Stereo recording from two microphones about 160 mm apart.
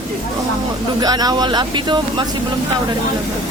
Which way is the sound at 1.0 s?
25° right (ahead or behind).